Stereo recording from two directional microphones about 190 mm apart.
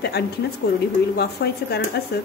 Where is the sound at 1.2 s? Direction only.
60° left (ahead or behind).